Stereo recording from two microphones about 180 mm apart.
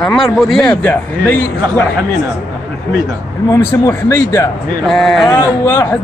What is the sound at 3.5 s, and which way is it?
Speech, 15° left (ahead or behind).